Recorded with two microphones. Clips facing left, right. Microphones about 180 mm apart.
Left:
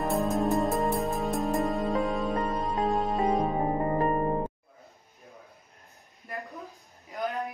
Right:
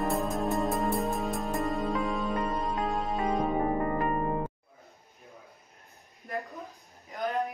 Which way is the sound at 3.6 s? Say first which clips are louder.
Left 2 dB; 25° left (ahead or behind).